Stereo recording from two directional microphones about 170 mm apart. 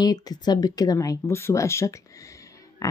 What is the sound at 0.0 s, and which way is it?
Speech, 25° left (ahead or behind).